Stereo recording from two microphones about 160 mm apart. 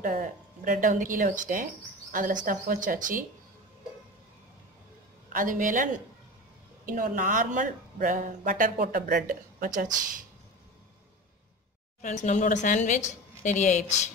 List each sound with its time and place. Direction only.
0.0 s speech: 60° right (ahead or behind)
5.3 s speech: 55° right (ahead or behind)
8.8 s speech: 70° right (ahead or behind)
12.0 s a woman's voice: 50° left (ahead or behind)